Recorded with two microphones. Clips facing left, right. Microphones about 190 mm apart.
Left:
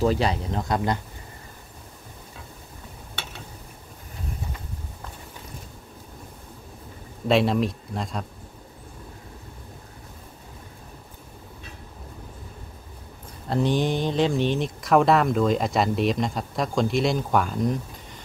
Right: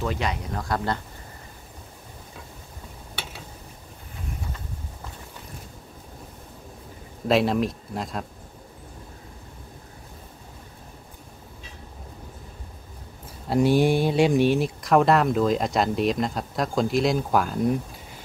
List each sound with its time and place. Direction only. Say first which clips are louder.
0.0 s speech: left 5 dB; 35° left (ahead or behind)
7.2 s speech: even; centre (ahead or behind)
13.5 s speech: right 4 dB; 10° right (ahead or behind)